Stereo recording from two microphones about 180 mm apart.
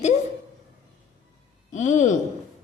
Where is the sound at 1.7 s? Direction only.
40° left (ahead or behind).